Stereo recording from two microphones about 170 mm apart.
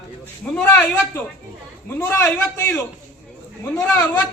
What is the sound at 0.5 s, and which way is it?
A man's voice, 10° left (ahead or behind).